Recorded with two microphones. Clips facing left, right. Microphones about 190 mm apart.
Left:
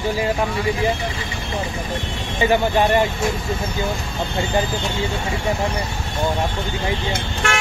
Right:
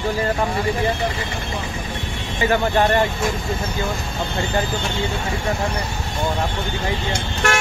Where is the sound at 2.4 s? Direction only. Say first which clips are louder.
Left 1 dB; 20° left (ahead or behind).